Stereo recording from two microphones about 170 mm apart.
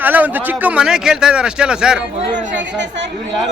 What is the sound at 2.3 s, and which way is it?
Speech, 90° right.